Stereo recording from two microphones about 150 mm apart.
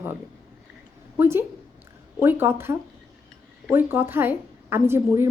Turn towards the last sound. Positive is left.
turn(degrees=-15)  # may be behind; listen again after turning